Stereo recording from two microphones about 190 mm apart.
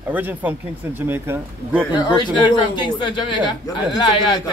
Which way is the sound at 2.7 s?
25° left (ahead or behind).